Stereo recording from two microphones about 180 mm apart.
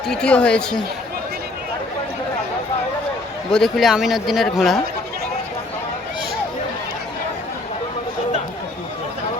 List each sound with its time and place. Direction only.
0.1 s speech: 5° left (ahead or behind)
3.5 s speech: centre (ahead or behind)